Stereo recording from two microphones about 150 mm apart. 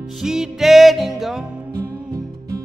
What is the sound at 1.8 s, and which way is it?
Music, 25° right (ahead or behind).